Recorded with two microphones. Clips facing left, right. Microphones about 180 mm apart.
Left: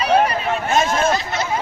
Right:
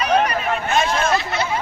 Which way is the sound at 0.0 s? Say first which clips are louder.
Left 2 dB; 30° left (ahead or behind).